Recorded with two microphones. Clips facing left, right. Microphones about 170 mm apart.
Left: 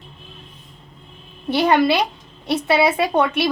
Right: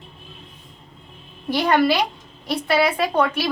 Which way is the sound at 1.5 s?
25° left (ahead or behind).